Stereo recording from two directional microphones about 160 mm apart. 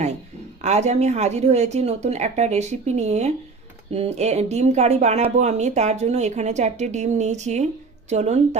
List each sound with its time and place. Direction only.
0.6 s speech: 45° right (ahead or behind)